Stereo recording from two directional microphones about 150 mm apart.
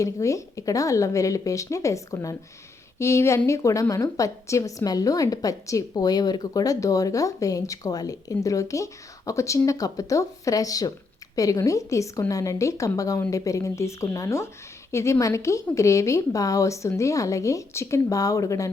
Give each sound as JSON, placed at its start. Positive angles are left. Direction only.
{"t": 0.0, "sound": "a woman's voice", "side_deg": 20}